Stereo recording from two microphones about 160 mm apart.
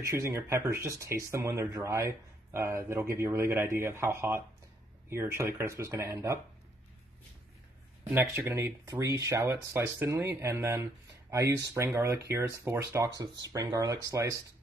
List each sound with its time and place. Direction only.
0.0 s speech: 15° right (ahead or behind)
8.1 s speech: 15° right (ahead or behind)